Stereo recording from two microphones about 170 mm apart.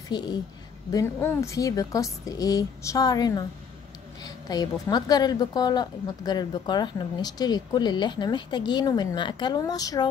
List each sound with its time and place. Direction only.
0.1 s a woman's voice: 25° left (ahead or behind)